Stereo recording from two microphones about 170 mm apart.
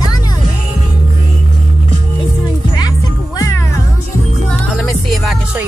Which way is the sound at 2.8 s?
20° left (ahead or behind).